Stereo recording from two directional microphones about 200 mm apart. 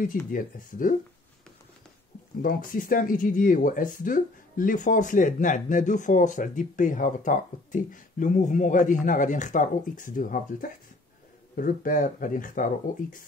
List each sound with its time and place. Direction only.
0.3 s speech: 45° left (ahead or behind)
2.4 s speech: 45° left (ahead or behind)